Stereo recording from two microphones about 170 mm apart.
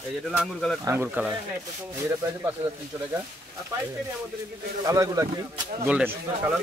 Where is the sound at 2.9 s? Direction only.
20° right (ahead or behind).